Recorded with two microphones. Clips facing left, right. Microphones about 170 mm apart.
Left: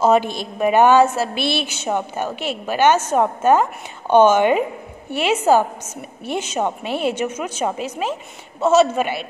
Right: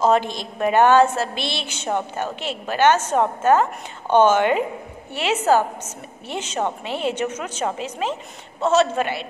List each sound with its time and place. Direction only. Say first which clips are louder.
0.0 s a woman's voice: left 2 dB; 10° left (ahead or behind)